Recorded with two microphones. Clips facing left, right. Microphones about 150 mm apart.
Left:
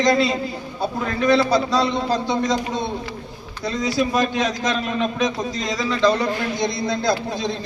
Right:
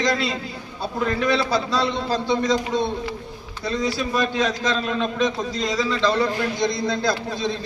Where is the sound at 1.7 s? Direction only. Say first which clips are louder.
Left 3 dB; 15° left (ahead or behind).